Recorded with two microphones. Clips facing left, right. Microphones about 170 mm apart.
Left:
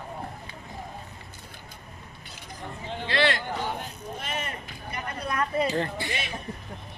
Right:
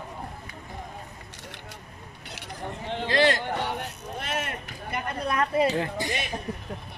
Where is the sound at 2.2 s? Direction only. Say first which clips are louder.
Right 4 dB; 70° right (ahead or behind).